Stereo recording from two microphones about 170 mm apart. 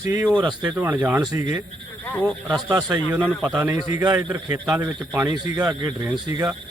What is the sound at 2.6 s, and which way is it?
A man's voice, 15° right (ahead or behind).